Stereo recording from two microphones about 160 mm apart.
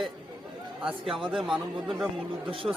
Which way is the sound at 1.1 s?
Centre (ahead or behind).